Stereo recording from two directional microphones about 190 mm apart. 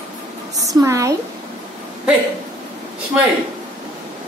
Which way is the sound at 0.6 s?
15° right (ahead or behind).